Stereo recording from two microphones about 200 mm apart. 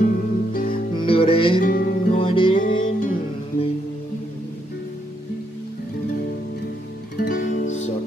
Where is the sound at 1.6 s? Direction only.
45° left (ahead or behind).